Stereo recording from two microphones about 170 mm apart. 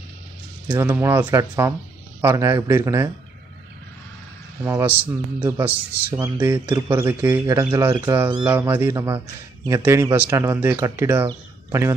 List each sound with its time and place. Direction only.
0.7 s speech: 15° right (ahead or behind)
4.6 s speech: 15° right (ahead or behind)